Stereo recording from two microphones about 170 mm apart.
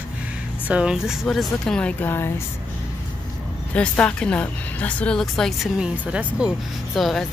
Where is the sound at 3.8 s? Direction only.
5° left (ahead or behind).